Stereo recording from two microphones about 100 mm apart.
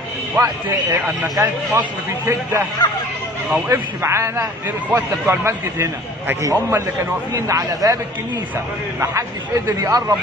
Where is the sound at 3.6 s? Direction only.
25° right (ahead or behind).